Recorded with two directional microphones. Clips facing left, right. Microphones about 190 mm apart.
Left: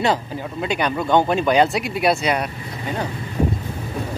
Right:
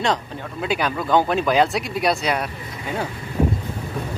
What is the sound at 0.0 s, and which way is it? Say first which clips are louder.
Speech: left 2 dB; 5° left (ahead or behind).